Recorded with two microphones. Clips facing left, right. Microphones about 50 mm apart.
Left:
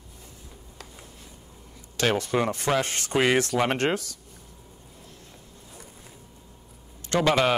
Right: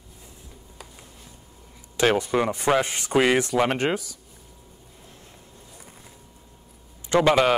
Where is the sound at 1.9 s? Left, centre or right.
Centre.